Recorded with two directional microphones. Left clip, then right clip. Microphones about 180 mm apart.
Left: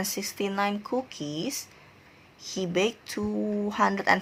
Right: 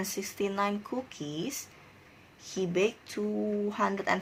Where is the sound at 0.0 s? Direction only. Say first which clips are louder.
Left 2 dB; 15° left (ahead or behind).